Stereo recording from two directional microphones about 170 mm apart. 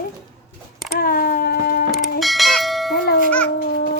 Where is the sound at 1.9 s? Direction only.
Centre (ahead or behind).